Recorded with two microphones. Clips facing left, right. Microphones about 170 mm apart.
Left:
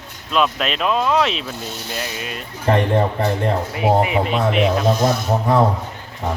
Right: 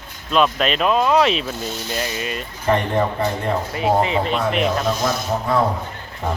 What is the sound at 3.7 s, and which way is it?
Speech, 15° left (ahead or behind).